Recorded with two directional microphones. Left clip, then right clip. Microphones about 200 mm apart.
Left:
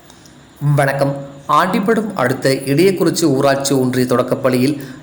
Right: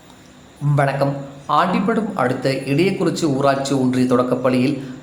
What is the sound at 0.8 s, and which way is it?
A man's voice, 15° left (ahead or behind).